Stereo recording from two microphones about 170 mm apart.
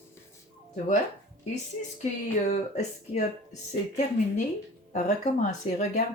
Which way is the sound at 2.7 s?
45° left (ahead or behind).